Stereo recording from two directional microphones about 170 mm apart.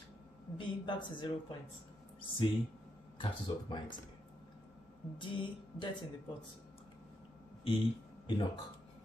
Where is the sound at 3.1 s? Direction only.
30° left (ahead or behind).